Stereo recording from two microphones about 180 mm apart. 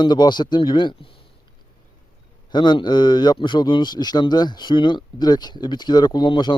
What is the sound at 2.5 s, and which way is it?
Speech, 25° left (ahead or behind).